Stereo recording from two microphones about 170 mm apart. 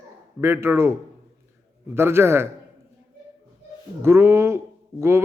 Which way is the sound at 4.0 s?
15° right (ahead or behind).